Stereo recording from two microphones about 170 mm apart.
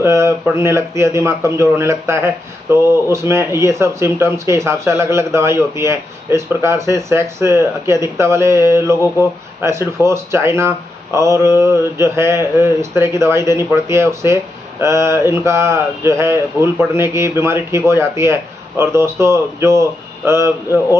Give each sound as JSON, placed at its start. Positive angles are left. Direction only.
{"t": 0.0, "sound": "speech", "side_deg": -15}